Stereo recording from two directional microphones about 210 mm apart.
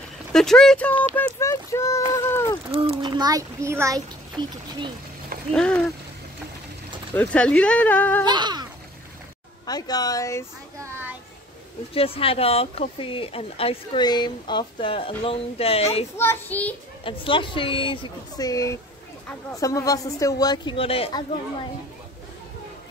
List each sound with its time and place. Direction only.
0.3 s speech: centre (ahead or behind)
2.7 s a child's voice: 25° right (ahead or behind)
5.5 s a sound: 5° left (ahead or behind)
7.2 s speech: 5° left (ahead or behind)
8.3 s speech: 20° right (ahead or behind)
9.7 s speech: 20° left (ahead or behind)
10.8 s a sound: 10° right (ahead or behind)
11.9 s speech: 25° left (ahead or behind)
16.2 s speech: 10° left (ahead or behind)
17.0 s speech: 25° left (ahead or behind)